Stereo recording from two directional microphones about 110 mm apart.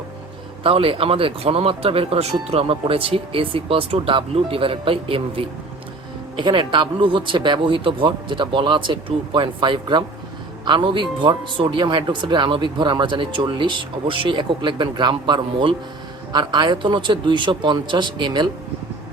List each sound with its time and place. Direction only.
0.6 s speech: 55° right (ahead or behind)